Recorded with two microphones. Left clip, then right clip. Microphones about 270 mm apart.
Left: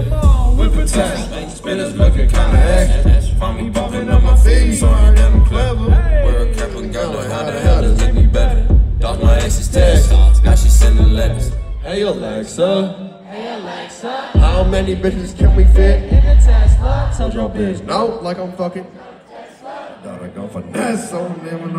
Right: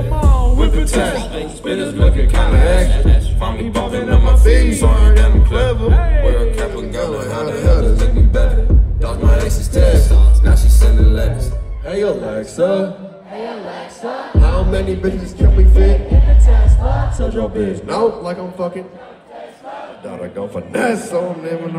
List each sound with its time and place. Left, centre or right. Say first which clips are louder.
0.2 s music: right 4 dB; centre
11.9 s a man's voice: right 1 dB; centre
14.3 s a man's voice: left 4 dB; centre
17.2 s a man's voice: right 4 dB; centre
20.7 s a man's voice: right 3 dB; centre